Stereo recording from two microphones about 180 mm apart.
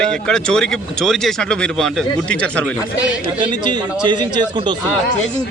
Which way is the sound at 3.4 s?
25° right (ahead or behind).